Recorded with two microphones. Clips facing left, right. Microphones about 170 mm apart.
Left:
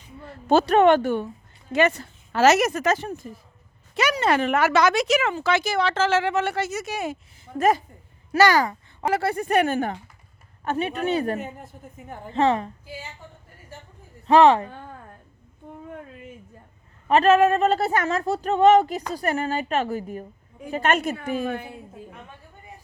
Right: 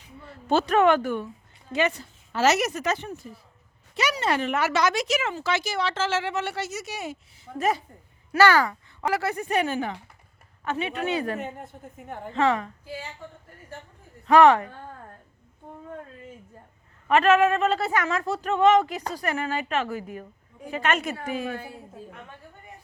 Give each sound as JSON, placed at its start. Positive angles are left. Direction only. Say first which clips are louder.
{"t": 0.2, "sound": "speech", "louder": "left 4 dB", "side_deg": 45}
{"t": 1.8, "sound": "speech", "louder": "left 5 dB", "side_deg": 50}
{"t": 8.4, "sound": "speech", "louder": "left 1 dB", "side_deg": 15}
{"t": 9.6, "sound": "speech", "louder": "left 4 dB", "side_deg": 50}
{"t": 11.3, "sound": "speech", "louder": "even", "side_deg": 5}
{"t": 12.3, "sound": "speech", "louder": "left 2 dB", "side_deg": 35}
{"t": 14.3, "sound": "speech", "louder": "left 1 dB", "side_deg": 20}
{"t": 17.1, "sound": "speech", "louder": "left 2 dB", "side_deg": 35}
{"t": 21.5, "sound": "speech", "louder": "left 4 dB", "side_deg": 20}